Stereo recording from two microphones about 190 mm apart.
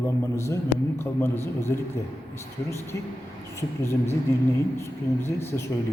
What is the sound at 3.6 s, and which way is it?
A man's voice, 15° left (ahead or behind).